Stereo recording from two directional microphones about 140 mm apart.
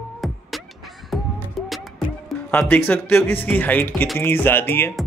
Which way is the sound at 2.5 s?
10° left (ahead or behind).